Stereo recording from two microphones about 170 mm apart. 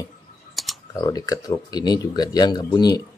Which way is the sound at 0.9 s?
20° left (ahead or behind).